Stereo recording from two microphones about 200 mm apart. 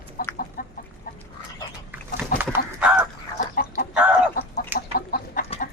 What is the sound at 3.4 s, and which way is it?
Chicken, 45° left (ahead or behind).